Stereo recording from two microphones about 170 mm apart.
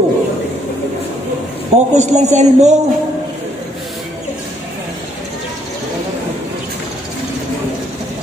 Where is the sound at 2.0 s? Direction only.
40° right (ahead or behind).